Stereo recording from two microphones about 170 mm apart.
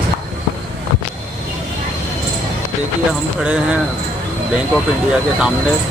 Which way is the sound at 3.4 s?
5° right (ahead or behind).